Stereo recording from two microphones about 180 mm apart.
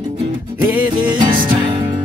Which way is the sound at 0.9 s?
25° right (ahead or behind).